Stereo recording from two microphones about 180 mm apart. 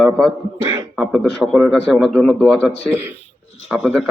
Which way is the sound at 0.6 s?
20° right (ahead or behind).